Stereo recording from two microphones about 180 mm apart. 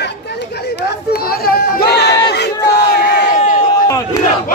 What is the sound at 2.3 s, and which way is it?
Crowd, 65° left (ahead or behind).